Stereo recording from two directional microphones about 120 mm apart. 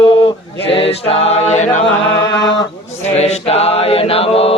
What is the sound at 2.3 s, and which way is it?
Mantra, 40° left (ahead or behind).